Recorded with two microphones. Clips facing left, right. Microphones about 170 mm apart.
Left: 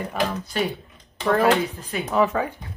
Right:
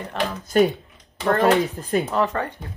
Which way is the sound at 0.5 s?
50° right (ahead or behind).